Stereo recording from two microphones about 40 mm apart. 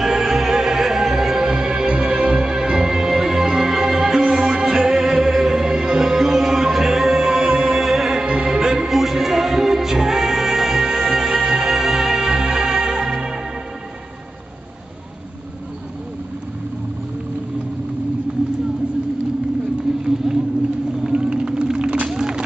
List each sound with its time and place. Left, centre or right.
0.0 s music: centre
7.8 s music: centre
19.9 s a sound: centre
20.3 s vehicle: centre
21.1 s whale vocalization: right
22.1 s run: centre